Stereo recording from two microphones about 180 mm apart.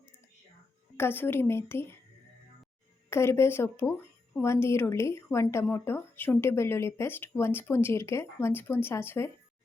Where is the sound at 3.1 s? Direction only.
15° left (ahead or behind).